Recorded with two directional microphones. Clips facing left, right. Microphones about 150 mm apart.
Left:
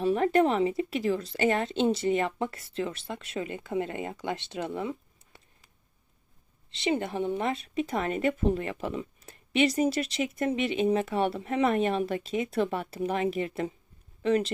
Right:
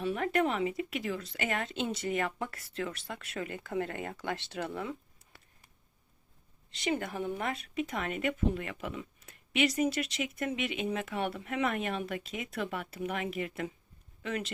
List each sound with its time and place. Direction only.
0.0 s speech: 35° left (ahead or behind)
6.7 s speech: 25° left (ahead or behind)